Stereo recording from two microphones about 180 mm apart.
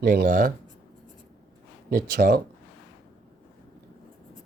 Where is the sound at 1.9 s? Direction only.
55° right (ahead or behind).